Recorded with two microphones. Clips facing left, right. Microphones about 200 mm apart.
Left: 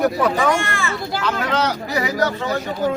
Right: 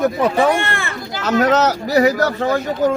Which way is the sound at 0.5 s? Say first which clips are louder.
Right 1 dB; 60° right (ahead or behind).